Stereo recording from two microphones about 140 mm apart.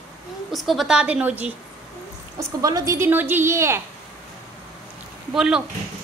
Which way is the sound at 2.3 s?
25° right (ahead or behind).